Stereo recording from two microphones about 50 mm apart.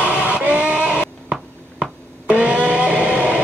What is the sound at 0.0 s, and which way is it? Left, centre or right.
Bleat, right.